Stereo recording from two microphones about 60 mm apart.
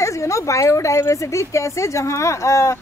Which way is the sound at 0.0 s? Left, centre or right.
Left.